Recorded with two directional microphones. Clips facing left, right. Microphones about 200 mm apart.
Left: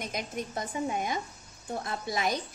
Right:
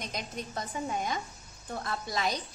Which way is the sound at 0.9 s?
10° left (ahead or behind).